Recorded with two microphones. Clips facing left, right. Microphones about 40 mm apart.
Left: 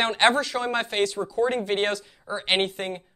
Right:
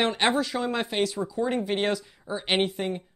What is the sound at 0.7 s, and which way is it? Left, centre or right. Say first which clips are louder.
Speech: left 2 dB; centre.